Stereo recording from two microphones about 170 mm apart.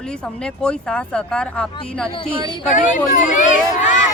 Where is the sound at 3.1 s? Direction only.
45° left (ahead or behind).